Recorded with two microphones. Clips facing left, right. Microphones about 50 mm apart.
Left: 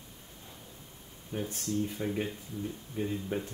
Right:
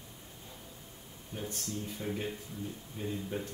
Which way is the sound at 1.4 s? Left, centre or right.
Centre.